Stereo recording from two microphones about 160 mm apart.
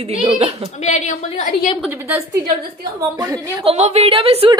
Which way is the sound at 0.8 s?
50° left (ahead or behind).